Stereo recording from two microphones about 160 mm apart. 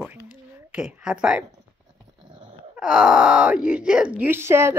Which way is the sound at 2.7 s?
5° right (ahead or behind).